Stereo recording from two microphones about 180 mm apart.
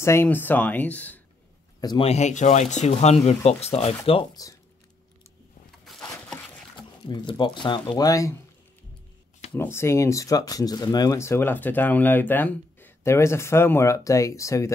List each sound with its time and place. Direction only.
0.0 s speech: 15° left (ahead or behind)
1.8 s a man's voice: 25° left (ahead or behind)
2.0 s speech: 40° left (ahead or behind); by 4.6 s 20° left (ahead or behind)
5.9 s a sound: 5° left (ahead or behind)
7.1 s speech: 25° left (ahead or behind)
9.5 s speech: 15° left (ahead or behind)